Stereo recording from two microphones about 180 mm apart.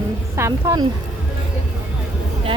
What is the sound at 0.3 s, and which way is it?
Speech, 15° right (ahead or behind).